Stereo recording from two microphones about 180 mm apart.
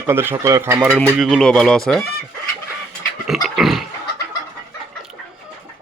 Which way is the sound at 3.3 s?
Centre (ahead or behind).